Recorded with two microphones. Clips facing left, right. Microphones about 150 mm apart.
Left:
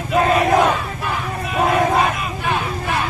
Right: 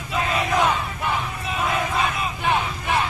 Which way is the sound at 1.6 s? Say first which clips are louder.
Left 8 dB; 50° left (ahead or behind).